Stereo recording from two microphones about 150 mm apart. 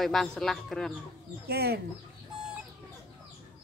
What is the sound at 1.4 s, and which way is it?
Speech, 90° right.